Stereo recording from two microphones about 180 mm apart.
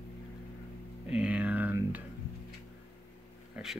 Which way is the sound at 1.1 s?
5° right (ahead or behind).